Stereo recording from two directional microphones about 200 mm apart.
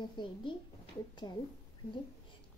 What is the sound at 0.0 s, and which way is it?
Speech, 25° left (ahead or behind).